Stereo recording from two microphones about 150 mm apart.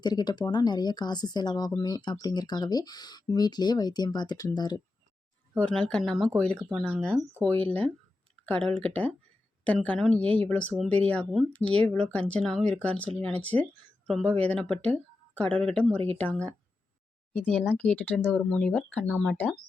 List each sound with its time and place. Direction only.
0.0 s speech: 30° left (ahead or behind)
5.5 s speech: 5° left (ahead or behind)